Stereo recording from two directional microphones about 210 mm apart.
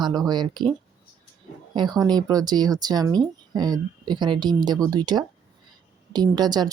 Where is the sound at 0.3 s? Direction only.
20° right (ahead or behind).